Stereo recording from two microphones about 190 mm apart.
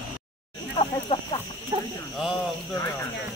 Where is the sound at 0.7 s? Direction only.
25° left (ahead or behind).